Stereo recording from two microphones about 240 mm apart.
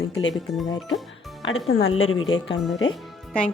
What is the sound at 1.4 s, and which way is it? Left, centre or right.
Speech, left.